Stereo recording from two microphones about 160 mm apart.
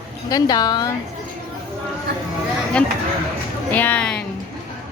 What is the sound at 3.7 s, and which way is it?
Speech, 10° left (ahead or behind).